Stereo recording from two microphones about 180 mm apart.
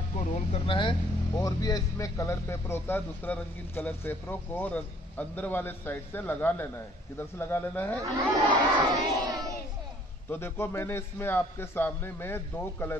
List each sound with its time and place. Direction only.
0.1 s speech: 40° left (ahead or behind)
0.7 s a man's voice: 30° left (ahead or behind); by 8.0 s 10° left (ahead or behind)
8.0 s crowd: 20° right (ahead or behind)
10.3 s a man's voice: 15° left (ahead or behind)